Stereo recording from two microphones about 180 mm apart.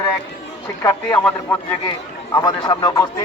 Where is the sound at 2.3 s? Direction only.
20° left (ahead or behind).